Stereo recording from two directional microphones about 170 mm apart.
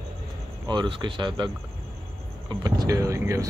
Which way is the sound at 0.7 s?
25° right (ahead or behind).